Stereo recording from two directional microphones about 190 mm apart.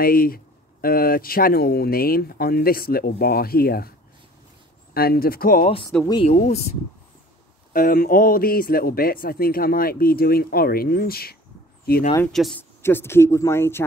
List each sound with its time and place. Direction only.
0.0 s speech: 50° left (ahead or behind)
4.9 s speech: 55° left (ahead or behind)
6.2 s speech: 40° left (ahead or behind)
7.7 s speech: 50° left (ahead or behind)
12.3 s speech: centre (ahead or behind)
12.8 s speech: 10° left (ahead or behind)